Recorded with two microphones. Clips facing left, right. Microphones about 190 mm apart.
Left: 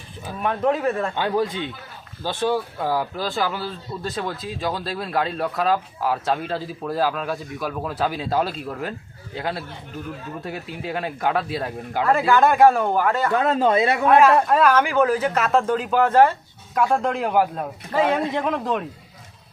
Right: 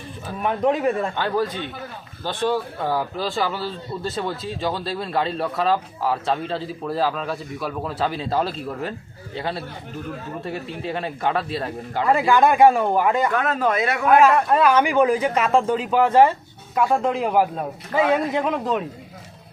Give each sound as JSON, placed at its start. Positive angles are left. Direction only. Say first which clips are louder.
{"t": 0.8, "sound": "speech", "louder": "right 1 dB", "side_deg": -5}
{"t": 1.1, "sound": "speech", "louder": "left 1 dB", "side_deg": 15}
{"t": 12.2, "sound": "speech", "louder": "even", "side_deg": -10}
{"t": 13.3, "sound": "speech", "louder": "left 3 dB", "side_deg": 25}
{"t": 14.5, "sound": "speech", "louder": "right 1 dB", "side_deg": -10}